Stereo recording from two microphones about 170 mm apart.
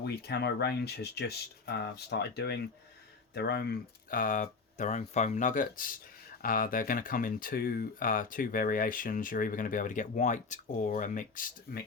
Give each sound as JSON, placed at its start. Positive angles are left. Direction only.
{"t": 0.0, "sound": "speech", "side_deg": 75}
{"t": 3.3, "sound": "speech", "side_deg": 75}